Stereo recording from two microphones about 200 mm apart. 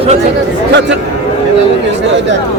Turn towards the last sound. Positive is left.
turn(degrees=-60)  # may be behind; listen again after turning